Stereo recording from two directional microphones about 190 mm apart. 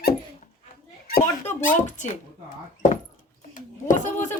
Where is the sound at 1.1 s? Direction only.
45° left (ahead or behind).